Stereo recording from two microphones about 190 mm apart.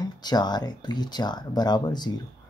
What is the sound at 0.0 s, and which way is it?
Speech, 20° left (ahead or behind).